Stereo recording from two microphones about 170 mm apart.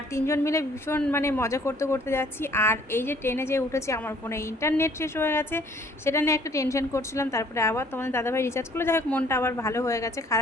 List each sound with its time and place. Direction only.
0.1 s a woman's voice: 15° left (ahead or behind)